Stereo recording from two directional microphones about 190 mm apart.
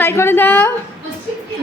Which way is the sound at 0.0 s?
10° left (ahead or behind).